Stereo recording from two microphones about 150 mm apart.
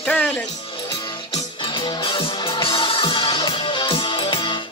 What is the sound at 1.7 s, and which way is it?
Music, 35° left (ahead or behind).